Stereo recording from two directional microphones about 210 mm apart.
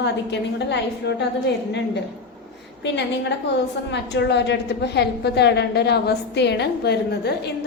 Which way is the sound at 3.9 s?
55° left (ahead or behind).